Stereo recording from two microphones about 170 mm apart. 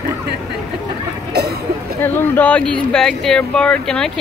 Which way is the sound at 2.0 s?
10° left (ahead or behind).